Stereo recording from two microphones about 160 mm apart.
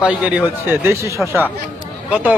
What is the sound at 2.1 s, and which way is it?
Speech, 10° right (ahead or behind).